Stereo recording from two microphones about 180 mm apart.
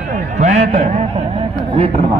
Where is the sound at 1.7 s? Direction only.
30° right (ahead or behind).